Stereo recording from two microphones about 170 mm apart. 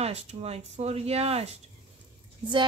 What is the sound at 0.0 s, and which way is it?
A woman's voice, 40° right (ahead or behind).